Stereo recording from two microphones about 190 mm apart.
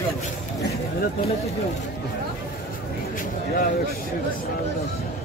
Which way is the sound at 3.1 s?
45° left (ahead or behind).